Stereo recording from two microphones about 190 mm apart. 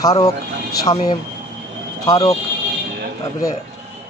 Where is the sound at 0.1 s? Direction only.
20° left (ahead or behind).